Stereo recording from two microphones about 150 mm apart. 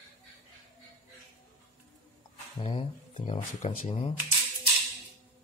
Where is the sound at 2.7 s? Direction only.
50° left (ahead or behind).